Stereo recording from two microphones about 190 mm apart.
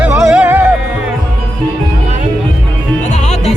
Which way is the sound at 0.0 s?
5° right (ahead or behind).